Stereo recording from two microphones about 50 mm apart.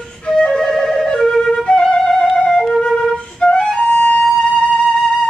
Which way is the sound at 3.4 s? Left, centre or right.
Centre.